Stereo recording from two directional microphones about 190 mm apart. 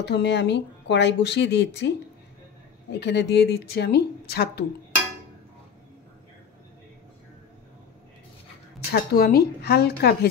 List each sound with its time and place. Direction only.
0.0 s speech: 65° left (ahead or behind)
8.9 s speech: 55° left (ahead or behind)